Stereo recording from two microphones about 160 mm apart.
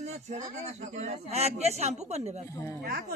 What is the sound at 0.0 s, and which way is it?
Speech, 45° right (ahead or behind).